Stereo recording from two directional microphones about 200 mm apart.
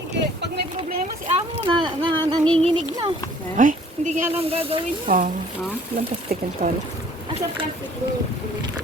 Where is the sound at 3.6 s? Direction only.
40° right (ahead or behind).